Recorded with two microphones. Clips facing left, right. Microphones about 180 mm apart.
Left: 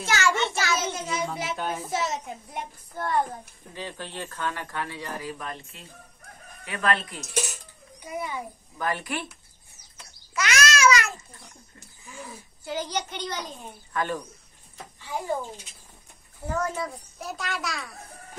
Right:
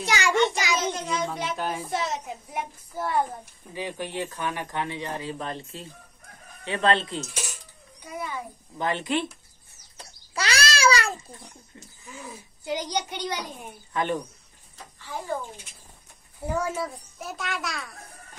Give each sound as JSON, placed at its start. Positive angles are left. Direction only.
{"t": 0.0, "sound": "a sound", "side_deg": -15}
{"t": 0.9, "sound": "a child's voice", "side_deg": 5}
{"t": 8.0, "sound": "a child's voice", "side_deg": 15}
{"t": 8.7, "sound": "speech", "side_deg": -25}
{"t": 12.6, "sound": "a child's voice", "side_deg": -15}
{"t": 15.0, "sound": "bathtub", "side_deg": 15}
{"t": 16.4, "sound": "a child's voice", "side_deg": -10}